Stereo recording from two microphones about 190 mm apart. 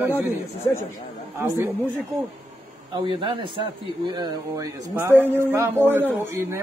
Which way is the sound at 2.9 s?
25° right (ahead or behind).